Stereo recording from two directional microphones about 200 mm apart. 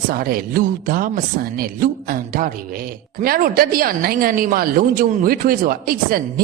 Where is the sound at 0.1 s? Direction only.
45° right (ahead or behind).